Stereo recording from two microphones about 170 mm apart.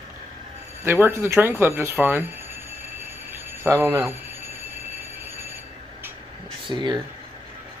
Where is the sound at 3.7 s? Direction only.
15° right (ahead or behind).